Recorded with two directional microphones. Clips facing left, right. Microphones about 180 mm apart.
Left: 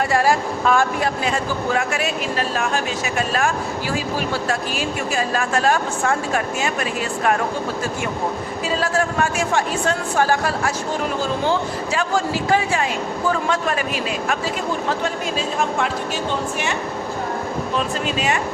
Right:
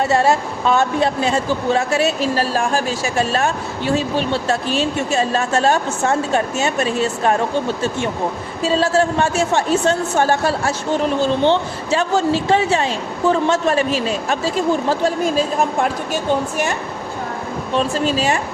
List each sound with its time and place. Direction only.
0.1 s speech: 25° right (ahead or behind)
8.6 s speech: 25° right (ahead or behind)
17.7 s speech: 35° right (ahead or behind)